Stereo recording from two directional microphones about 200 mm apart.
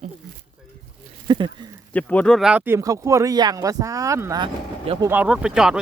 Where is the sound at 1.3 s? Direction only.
25° right (ahead or behind).